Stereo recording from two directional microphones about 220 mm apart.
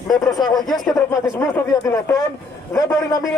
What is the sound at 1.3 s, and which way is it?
Speech, 10° left (ahead or behind).